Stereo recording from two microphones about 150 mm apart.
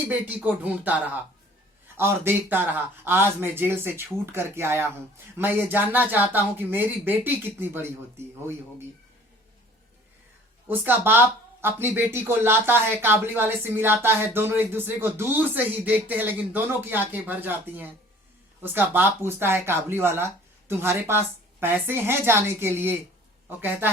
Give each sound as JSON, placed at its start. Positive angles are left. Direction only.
{"t": 0.0, "sound": "speech", "side_deg": -10}
{"t": 10.7, "sound": "speech", "side_deg": -15}